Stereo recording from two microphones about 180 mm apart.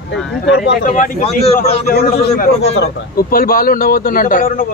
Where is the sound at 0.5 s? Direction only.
60° left (ahead or behind).